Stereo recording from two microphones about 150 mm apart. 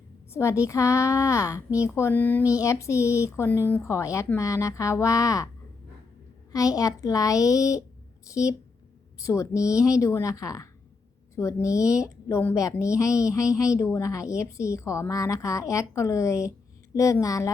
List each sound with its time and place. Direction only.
0.3 s a woman's voice: 20° left (ahead or behind)
6.5 s a woman's voice: 20° left (ahead or behind)